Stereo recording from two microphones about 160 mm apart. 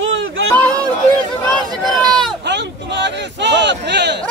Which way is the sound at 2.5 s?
90° right.